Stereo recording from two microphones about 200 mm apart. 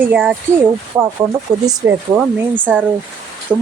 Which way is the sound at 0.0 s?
10° right (ahead or behind).